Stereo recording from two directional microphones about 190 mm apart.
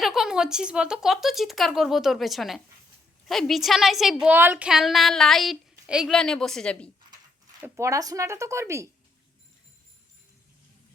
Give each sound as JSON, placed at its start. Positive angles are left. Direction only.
{"t": 0.0, "sound": "speech", "side_deg": 0}
{"t": 7.6, "sound": "speech", "side_deg": -15}